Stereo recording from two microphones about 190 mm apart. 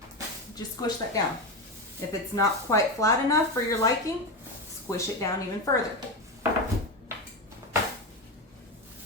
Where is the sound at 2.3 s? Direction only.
15° left (ahead or behind).